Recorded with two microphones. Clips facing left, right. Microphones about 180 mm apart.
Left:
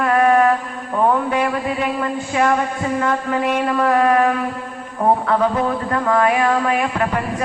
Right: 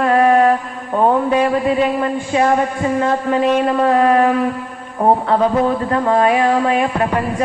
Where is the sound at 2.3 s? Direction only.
25° right (ahead or behind).